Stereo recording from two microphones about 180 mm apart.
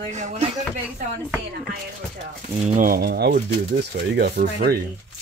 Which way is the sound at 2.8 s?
60° right (ahead or behind).